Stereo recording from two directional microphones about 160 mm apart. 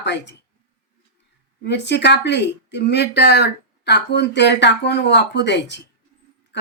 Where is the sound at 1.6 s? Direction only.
90° left.